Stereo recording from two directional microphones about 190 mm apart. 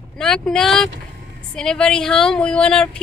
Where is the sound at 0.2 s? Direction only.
Centre (ahead or behind).